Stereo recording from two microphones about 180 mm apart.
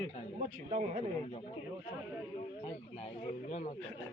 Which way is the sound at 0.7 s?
35° right (ahead or behind).